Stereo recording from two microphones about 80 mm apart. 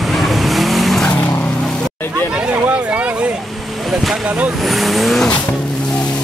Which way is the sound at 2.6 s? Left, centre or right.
Centre.